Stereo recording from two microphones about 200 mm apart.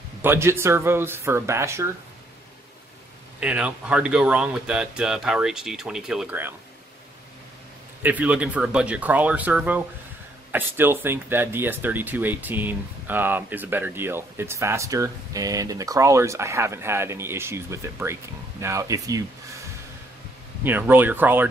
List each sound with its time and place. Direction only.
0.2 s speech: 10° right (ahead or behind)
3.3 s speech: 5° right (ahead or behind)
8.0 s speech: 10° right (ahead or behind)
20.6 s speech: 10° right (ahead or behind)